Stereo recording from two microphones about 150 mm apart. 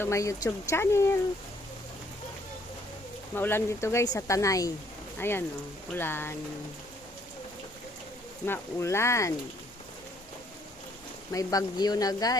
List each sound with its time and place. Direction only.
0.0 s speech: 20° left (ahead or behind)
3.3 s speech: 15° left (ahead or behind)
8.4 s speech: 15° left (ahead or behind)
11.3 s speech: 25° left (ahead or behind)